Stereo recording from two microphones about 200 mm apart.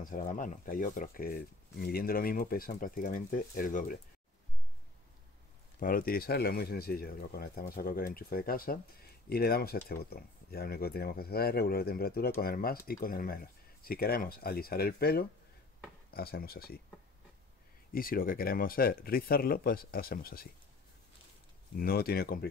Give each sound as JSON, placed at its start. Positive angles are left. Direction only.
{"t": 0.0, "sound": "speech", "side_deg": 40}
{"t": 5.8, "sound": "speech", "side_deg": 45}
{"t": 17.9, "sound": "speech", "side_deg": 45}
{"t": 21.7, "sound": "speech", "side_deg": 50}